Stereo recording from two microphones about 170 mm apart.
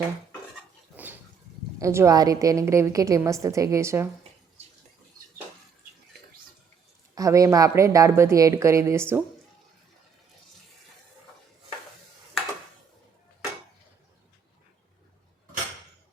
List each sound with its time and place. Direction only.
0.9 s a sound: 10° right (ahead or behind)
1.8 s a woman's voice: 15° right (ahead or behind)
7.2 s speech: 20° right (ahead or behind)